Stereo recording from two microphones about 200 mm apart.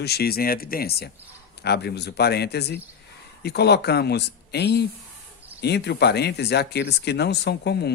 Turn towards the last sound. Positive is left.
turn(degrees=55)  # may be behind; listen again after turning